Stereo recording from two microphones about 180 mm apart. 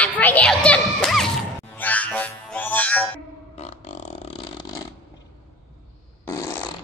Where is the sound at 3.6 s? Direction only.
40° left (ahead or behind).